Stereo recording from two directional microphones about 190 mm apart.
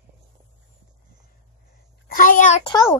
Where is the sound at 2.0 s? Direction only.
45° left (ahead or behind).